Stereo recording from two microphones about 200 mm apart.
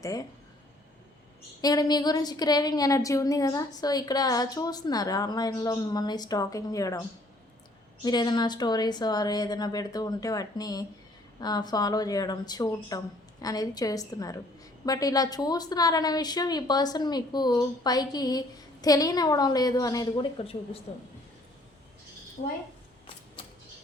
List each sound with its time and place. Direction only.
1.6 s a woman's voice: 20° left (ahead or behind)
8.0 s a woman's voice: 20° left (ahead or behind)
22.4 s a woman's voice: 40° left (ahead or behind)